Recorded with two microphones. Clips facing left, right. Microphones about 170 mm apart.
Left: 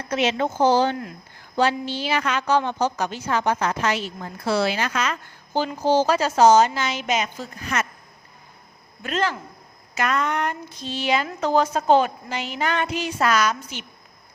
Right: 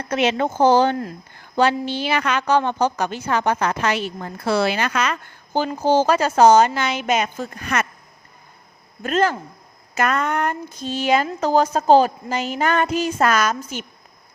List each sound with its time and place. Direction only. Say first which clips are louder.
0.1 s a woman's voice: right 2 dB; 55° right (ahead or behind)
5.5 s a woman's voice: right 2 dB; 50° right (ahead or behind)
9.0 s a woman's voice: right 5 dB; 45° right (ahead or behind)